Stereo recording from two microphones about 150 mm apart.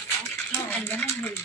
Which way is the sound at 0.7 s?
15° left (ahead or behind).